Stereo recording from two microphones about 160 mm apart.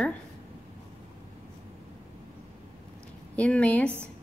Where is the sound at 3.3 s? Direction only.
5° left (ahead or behind).